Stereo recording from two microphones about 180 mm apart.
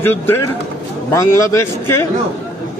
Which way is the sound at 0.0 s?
10° left (ahead or behind).